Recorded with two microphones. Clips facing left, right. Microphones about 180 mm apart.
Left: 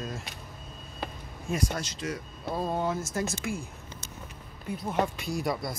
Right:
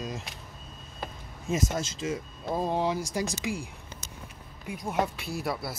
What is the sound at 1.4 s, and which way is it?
Speech, 25° right (ahead or behind).